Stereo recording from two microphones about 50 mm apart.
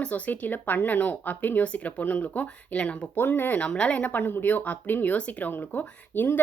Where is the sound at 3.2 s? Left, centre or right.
Left.